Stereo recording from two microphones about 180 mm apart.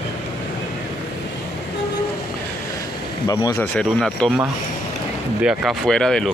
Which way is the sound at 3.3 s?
20° left (ahead or behind).